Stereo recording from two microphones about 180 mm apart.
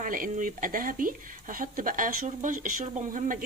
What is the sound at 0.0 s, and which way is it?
Speech, 50° right (ahead or behind).